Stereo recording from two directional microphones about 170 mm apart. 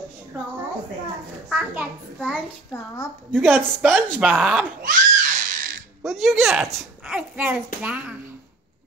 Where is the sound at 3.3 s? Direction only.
10° right (ahead or behind).